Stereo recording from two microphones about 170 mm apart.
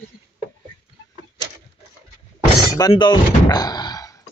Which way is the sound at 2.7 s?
25° left (ahead or behind).